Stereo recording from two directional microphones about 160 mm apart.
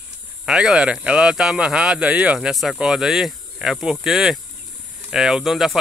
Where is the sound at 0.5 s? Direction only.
5° right (ahead or behind).